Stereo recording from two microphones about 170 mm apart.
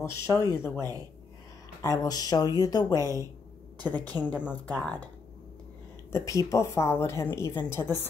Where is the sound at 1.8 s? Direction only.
20° left (ahead or behind).